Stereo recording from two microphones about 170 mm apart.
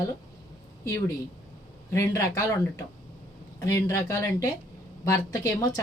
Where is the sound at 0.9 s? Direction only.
20° left (ahead or behind).